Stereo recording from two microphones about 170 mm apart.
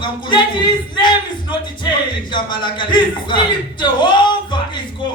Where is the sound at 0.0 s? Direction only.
25° left (ahead or behind).